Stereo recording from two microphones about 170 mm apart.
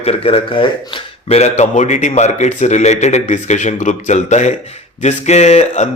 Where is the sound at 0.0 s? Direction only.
35° left (ahead or behind).